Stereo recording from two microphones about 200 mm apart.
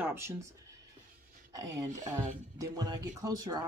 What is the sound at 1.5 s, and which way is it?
Speech, 15° right (ahead or behind).